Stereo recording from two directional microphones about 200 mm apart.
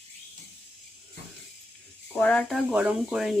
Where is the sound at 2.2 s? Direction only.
5° left (ahead or behind).